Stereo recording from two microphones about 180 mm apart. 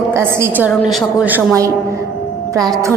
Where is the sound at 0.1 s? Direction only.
15° right (ahead or behind).